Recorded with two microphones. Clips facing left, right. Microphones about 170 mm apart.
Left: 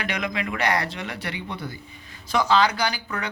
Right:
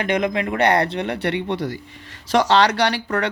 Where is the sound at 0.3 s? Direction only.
45° right (ahead or behind).